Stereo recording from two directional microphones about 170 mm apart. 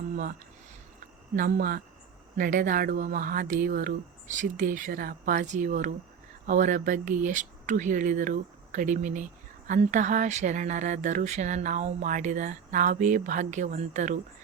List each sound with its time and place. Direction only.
1.4 s speech: 55° right (ahead or behind)